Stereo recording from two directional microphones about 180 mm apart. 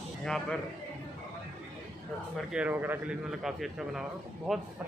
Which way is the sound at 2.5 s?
10° right (ahead or behind).